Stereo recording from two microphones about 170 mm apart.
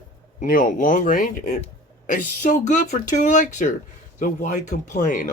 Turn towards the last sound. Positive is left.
turn(degrees=45)  # may be behind; listen again after turning